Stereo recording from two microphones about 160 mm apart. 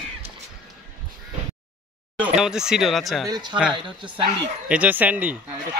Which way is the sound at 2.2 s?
5° right (ahead or behind).